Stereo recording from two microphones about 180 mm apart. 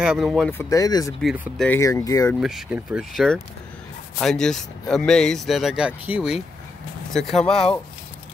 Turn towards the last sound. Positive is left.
turn(degrees=5)  # may be behind; listen again after turning